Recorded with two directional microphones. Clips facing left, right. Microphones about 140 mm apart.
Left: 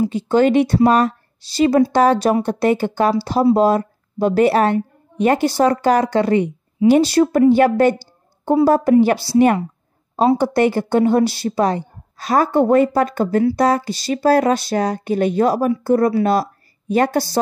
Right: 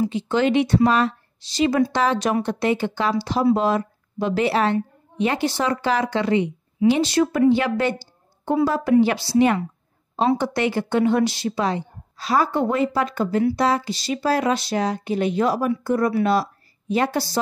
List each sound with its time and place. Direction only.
0.0 s a woman's voice: 40° left (ahead or behind)